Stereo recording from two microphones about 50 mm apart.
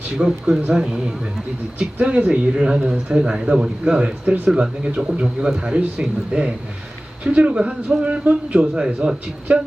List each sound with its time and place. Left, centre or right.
0.2 s speech: centre
2.0 s a man's voice: right